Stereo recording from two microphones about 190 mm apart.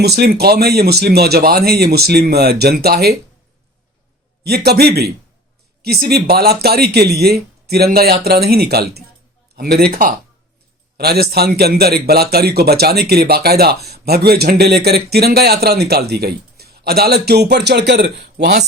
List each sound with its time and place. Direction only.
0.0 s speech: 55° right (ahead or behind)
4.4 s speech: 55° right (ahead or behind)